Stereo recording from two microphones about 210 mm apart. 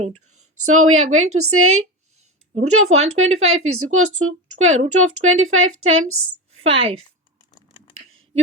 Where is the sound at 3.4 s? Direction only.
80° right.